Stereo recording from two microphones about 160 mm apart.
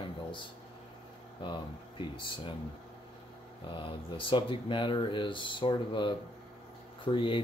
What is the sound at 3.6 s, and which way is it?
Speech, 35° left (ahead or behind).